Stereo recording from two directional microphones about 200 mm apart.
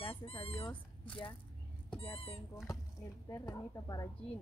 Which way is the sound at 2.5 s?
15° left (ahead or behind).